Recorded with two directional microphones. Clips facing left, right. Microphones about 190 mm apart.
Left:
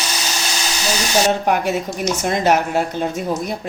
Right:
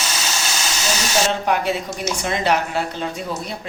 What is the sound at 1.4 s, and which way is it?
Speech, 45° left (ahead or behind).